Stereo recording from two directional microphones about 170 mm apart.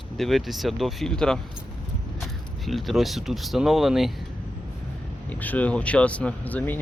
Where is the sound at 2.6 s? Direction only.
Centre (ahead or behind).